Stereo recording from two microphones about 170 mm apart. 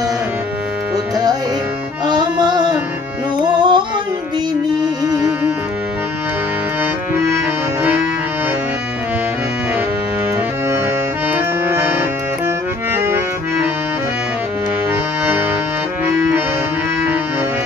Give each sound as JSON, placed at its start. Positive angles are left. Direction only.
{"t": 2.0, "sound": "music", "side_deg": -25}
{"t": 11.3, "sound": "accordion", "side_deg": -10}